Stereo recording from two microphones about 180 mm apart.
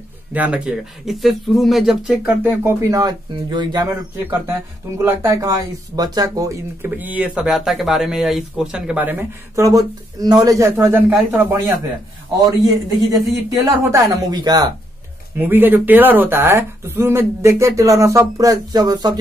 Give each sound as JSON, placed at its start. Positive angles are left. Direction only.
{"t": 0.3, "sound": "speech", "side_deg": -10}
{"t": 4.3, "sound": "speech", "side_deg": -15}
{"t": 13.1, "sound": "speech", "side_deg": -20}
{"t": 15.3, "sound": "speech", "side_deg": -10}